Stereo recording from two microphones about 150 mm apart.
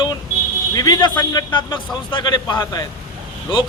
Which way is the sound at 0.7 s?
25° left (ahead or behind).